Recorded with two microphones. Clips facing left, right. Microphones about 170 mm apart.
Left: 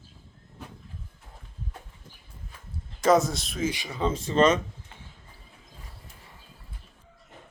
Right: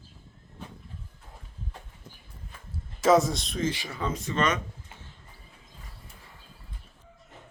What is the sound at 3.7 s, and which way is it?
Speech, 15° left (ahead or behind).